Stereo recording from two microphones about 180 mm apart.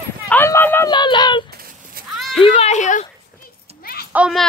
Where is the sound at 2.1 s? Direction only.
Centre (ahead or behind).